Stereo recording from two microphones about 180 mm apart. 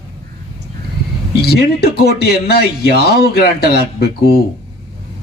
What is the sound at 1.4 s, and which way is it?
Speech, 60° left (ahead or behind).